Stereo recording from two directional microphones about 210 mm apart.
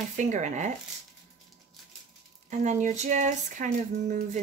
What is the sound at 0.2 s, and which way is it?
Speech, 35° right (ahead or behind).